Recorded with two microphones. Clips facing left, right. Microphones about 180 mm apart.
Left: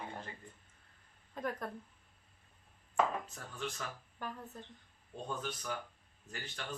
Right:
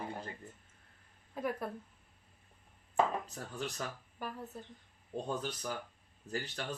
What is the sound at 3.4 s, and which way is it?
Speech, 35° right (ahead or behind).